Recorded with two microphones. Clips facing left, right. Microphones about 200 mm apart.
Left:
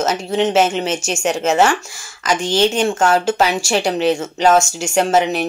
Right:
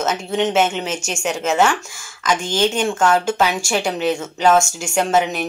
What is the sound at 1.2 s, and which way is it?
Speech, 40° left (ahead or behind).